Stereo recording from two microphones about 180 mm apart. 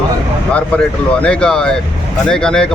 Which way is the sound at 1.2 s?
5° left (ahead or behind).